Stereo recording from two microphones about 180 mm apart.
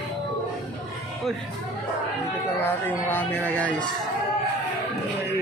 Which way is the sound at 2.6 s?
10° left (ahead or behind).